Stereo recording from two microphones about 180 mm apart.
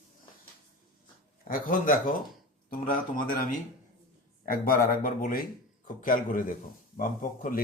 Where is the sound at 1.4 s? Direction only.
50° left (ahead or behind).